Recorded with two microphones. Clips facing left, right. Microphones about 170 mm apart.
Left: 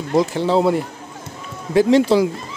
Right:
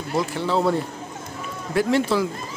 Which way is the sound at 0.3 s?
15° left (ahead or behind).